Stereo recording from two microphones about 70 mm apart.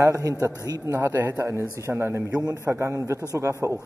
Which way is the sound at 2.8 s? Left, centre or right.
Right.